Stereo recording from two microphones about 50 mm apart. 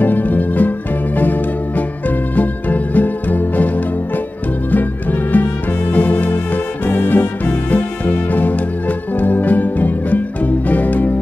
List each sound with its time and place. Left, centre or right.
0.0 s music: left